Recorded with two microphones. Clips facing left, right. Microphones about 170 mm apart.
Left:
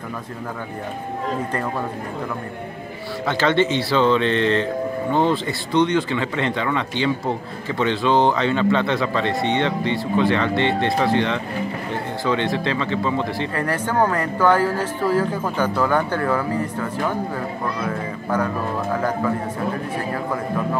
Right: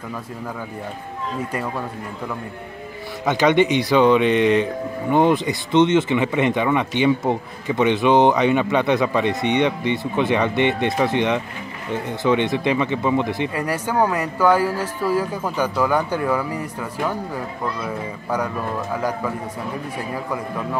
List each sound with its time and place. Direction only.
3.3 s speech: 15° right (ahead or behind)